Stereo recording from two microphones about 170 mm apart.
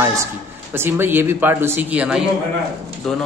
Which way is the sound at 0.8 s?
15° right (ahead or behind).